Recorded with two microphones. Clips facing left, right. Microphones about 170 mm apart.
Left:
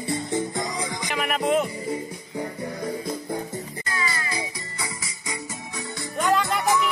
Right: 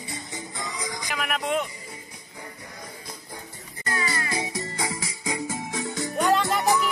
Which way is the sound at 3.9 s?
45° right (ahead or behind).